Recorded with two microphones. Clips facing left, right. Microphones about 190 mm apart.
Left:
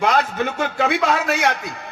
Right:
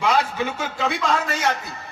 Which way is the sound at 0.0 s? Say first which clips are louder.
Left 2 dB; 50° left (ahead or behind).